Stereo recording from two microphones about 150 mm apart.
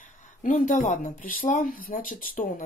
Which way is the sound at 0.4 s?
60° left (ahead or behind).